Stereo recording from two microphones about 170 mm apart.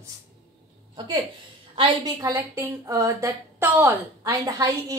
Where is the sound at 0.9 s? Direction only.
30° right (ahead or behind).